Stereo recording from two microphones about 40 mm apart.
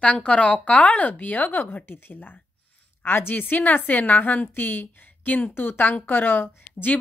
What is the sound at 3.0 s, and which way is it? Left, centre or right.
A woman's voice, left.